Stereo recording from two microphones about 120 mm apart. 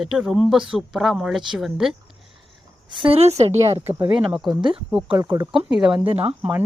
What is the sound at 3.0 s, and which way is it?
Speech, 55° right (ahead or behind).